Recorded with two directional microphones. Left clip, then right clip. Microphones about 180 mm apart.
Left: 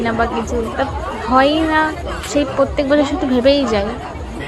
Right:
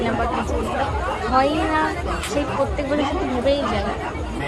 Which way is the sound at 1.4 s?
25° left (ahead or behind).